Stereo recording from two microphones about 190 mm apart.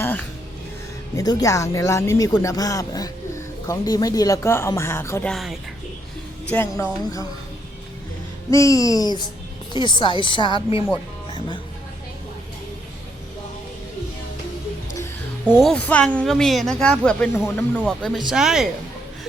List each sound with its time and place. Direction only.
0.0 s music: 10° left (ahead or behind)
1.1 s speech: 20° left (ahead or behind)
5.3 s speech: centre (ahead or behind)
6.5 s speech: 10° left (ahead or behind)
8.4 s speech: 15° left (ahead or behind)
15.5 s speech: 5° left (ahead or behind)